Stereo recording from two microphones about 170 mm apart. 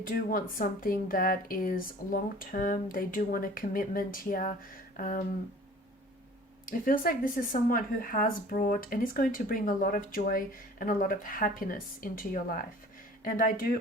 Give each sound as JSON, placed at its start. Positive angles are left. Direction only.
{"t": 0.0, "sound": "speech", "side_deg": 55}
{"t": 4.9, "sound": "a sound", "side_deg": 55}
{"t": 6.7, "sound": "speech", "side_deg": 55}